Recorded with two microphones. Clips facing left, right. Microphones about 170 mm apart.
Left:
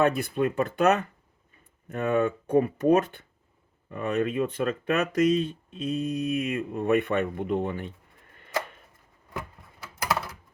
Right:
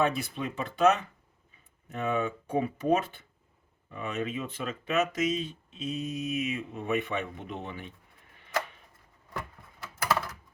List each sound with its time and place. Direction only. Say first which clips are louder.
0.0 s speech: left 5 dB; 55° left (ahead or behind)